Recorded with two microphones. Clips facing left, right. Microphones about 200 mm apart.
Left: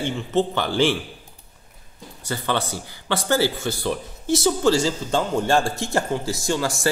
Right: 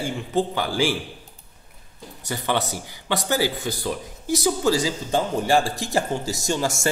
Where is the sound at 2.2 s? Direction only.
20° right (ahead or behind).